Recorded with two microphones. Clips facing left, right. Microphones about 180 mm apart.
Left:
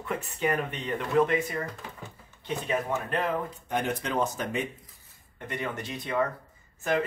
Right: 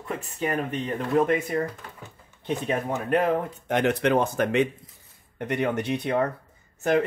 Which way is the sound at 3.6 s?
85° right.